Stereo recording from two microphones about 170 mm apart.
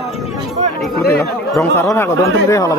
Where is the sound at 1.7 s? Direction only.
15° left (ahead or behind).